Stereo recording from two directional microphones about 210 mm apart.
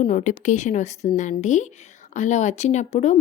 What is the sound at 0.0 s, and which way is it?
A woman's voice, 35° left (ahead or behind).